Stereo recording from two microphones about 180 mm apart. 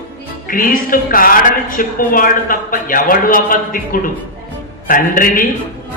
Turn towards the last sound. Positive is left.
turn(degrees=50)  # may be behind; listen again after turning